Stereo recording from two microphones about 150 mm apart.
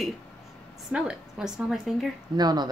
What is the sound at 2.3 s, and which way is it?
Speech, 25° right (ahead or behind).